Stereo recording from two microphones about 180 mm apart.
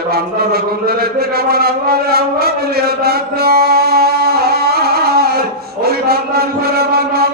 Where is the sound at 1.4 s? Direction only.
60° right (ahead or behind).